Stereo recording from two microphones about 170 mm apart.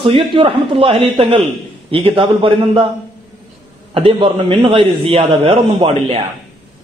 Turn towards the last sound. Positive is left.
turn(degrees=-35)  # may be behind; listen again after turning